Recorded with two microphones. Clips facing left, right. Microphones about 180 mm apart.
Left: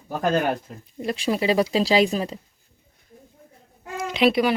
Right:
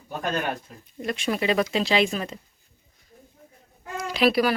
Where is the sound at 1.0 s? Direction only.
30° left (ahead or behind).